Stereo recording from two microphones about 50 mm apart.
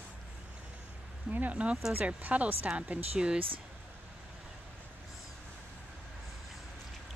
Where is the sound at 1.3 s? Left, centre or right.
Right.